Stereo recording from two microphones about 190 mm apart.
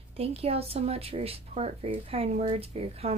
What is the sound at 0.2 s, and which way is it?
A woman's voice, 30° right (ahead or behind).